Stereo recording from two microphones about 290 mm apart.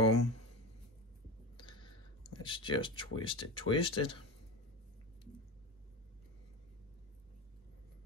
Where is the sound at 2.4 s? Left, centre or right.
Centre.